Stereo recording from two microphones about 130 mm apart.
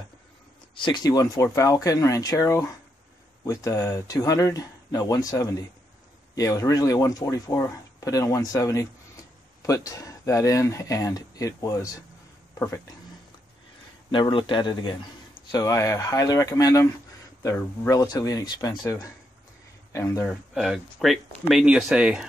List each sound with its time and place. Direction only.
0.7 s speech: 35° left (ahead or behind); by 12.9 s 20° left (ahead or behind)
14.1 s speech: 40° left (ahead or behind)
19.9 s speech: 20° left (ahead or behind)
20.2 s speech: centre (ahead or behind)